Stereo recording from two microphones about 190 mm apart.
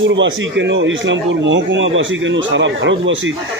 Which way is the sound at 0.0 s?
75° right (ahead or behind).